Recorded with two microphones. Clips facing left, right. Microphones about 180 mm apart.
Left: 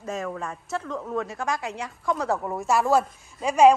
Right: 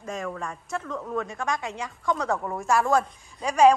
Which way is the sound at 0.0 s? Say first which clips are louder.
Left 2 dB; 5° left (ahead or behind).